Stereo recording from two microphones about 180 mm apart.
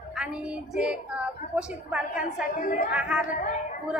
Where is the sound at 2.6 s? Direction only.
45° left (ahead or behind).